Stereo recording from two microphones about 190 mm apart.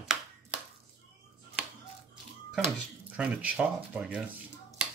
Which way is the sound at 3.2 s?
5° right (ahead or behind).